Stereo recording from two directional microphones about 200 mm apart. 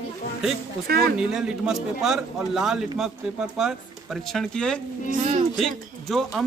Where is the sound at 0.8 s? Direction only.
50° right (ahead or behind).